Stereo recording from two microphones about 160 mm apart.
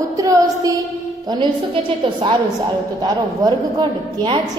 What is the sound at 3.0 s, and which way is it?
A woman's voice, 25° right (ahead or behind).